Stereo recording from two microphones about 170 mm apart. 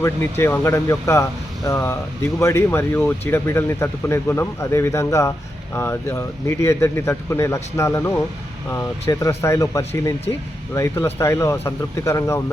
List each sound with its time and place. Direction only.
0.0 s speech: 15° left (ahead or behind)